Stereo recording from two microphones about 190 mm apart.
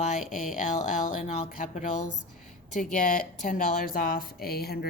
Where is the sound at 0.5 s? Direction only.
40° left (ahead or behind).